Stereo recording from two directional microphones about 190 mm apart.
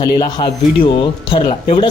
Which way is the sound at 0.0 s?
20° left (ahead or behind).